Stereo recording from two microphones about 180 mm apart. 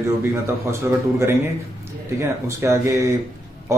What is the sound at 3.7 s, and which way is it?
Music, 15° right (ahead or behind).